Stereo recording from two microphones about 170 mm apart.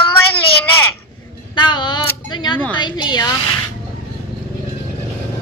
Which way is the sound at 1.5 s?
25° left (ahead or behind).